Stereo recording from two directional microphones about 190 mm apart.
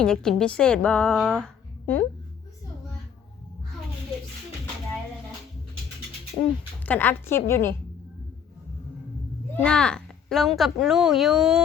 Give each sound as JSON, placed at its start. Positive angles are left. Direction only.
{"t": 0.0, "sound": "speech", "side_deg": 5}
{"t": 6.4, "sound": "speech", "side_deg": 30}
{"t": 6.8, "sound": "a woman's voice", "side_deg": 10}
{"t": 9.6, "sound": "speech", "side_deg": 5}